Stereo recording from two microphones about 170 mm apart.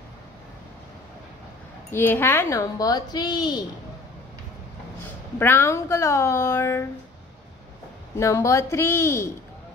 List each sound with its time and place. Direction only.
1.9 s speech: 15° left (ahead or behind)
5.4 s a woman's voice: 15° left (ahead or behind)
8.2 s a woman's voice: 20° left (ahead or behind)